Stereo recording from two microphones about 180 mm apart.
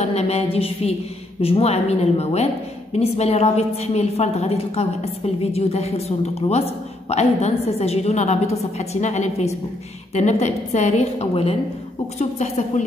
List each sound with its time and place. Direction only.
0.0 s a woman's voice: 35° left (ahead or behind)